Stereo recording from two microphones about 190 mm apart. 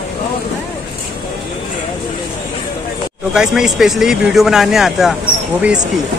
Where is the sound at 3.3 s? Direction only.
5° right (ahead or behind).